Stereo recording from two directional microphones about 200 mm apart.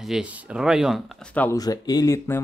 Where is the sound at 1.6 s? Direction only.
20° left (ahead or behind).